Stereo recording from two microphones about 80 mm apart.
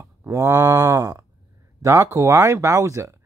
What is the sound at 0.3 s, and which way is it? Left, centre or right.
Speech, right.